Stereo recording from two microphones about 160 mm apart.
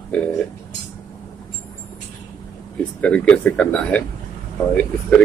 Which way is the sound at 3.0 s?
10° left (ahead or behind).